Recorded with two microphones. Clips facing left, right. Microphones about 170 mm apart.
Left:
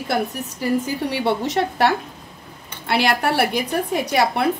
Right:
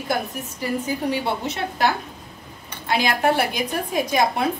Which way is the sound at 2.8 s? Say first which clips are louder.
Left 1 dB; 70° left (ahead or behind).